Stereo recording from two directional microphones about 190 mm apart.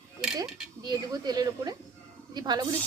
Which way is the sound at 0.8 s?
20° right (ahead or behind).